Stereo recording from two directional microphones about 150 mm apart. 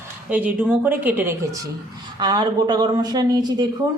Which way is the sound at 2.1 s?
30° right (ahead or behind).